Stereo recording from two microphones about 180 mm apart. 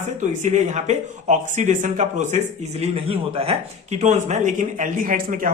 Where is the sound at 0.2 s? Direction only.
40° right (ahead or behind).